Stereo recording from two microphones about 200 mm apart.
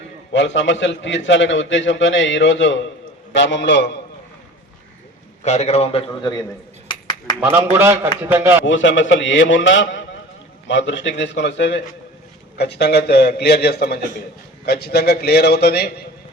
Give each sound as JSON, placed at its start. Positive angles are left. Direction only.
{"t": 0.3, "sound": "a man's voice", "side_deg": 65}
{"t": 5.5, "sound": "a man's voice", "side_deg": 35}
{"t": 7.3, "sound": "a man's voice", "side_deg": -10}
{"t": 8.6, "sound": "a man's voice", "side_deg": 70}